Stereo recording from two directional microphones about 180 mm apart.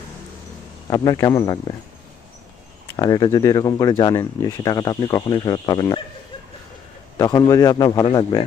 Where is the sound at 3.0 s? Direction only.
20° left (ahead or behind).